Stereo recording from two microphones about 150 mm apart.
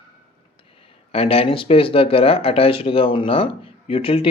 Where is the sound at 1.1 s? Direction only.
40° left (ahead or behind).